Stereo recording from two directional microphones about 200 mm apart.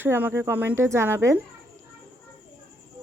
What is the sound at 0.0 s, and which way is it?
Speech, 10° right (ahead or behind).